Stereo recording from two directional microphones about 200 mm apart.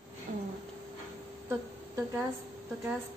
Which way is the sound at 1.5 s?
10° right (ahead or behind).